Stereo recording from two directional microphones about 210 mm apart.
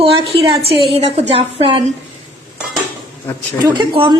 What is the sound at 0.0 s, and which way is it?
A woman's voice, 25° right (ahead or behind).